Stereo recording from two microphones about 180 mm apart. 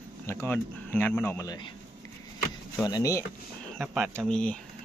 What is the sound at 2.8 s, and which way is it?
Speech, 20° left (ahead or behind).